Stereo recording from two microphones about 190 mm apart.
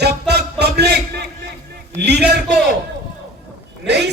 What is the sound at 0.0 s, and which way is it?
Music, 60° right (ahead or behind).